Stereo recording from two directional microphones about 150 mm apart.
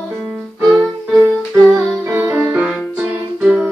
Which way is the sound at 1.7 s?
15° right (ahead or behind).